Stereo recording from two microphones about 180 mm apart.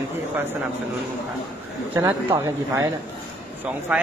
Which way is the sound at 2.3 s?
20° right (ahead or behind).